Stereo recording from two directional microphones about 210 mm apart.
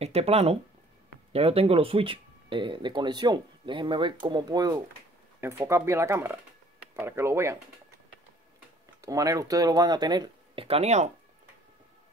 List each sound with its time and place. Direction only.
0.0 s speech: 30° right (ahead or behind); by 7.5 s 15° right (ahead or behind)
9.0 s speech: 15° right (ahead or behind); by 11.1 s 30° right (ahead or behind)